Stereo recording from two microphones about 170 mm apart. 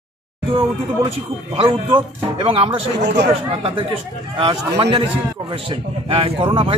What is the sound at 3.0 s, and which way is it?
Speech, 90° right.